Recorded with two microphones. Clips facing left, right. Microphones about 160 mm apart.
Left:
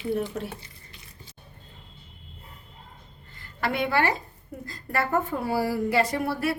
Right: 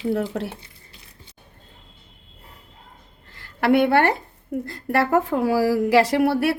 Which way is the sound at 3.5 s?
60° right (ahead or behind).